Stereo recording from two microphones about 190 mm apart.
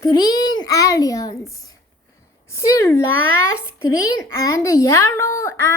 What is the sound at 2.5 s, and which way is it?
Speech, 15° left (ahead or behind).